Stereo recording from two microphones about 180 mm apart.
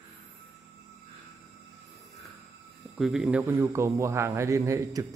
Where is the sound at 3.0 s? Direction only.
5° right (ahead or behind).